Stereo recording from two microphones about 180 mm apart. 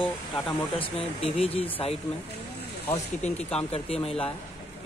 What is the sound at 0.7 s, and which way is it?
Speech, 35° left (ahead or behind).